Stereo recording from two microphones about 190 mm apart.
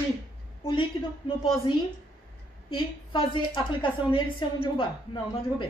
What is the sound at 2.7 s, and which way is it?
A woman's voice, 25° left (ahead or behind).